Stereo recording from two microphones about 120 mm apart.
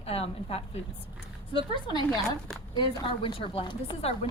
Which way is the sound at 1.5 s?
40° left (ahead or behind).